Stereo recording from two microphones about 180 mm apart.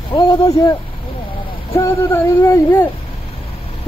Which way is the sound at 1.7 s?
15° left (ahead or behind).